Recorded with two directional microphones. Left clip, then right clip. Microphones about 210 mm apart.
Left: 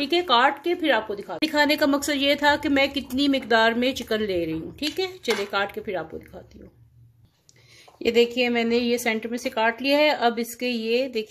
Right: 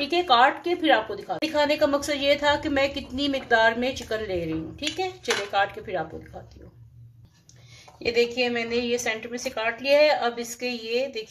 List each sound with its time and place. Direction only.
0.0 s a woman's voice: 40° left (ahead or behind)
8.0 s a woman's voice: 55° left (ahead or behind)